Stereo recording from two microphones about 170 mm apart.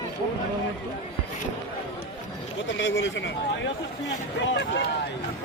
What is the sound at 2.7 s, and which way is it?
Speech, 90° left.